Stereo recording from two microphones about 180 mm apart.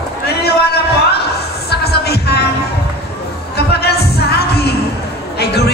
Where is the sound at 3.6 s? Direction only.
65° left (ahead or behind).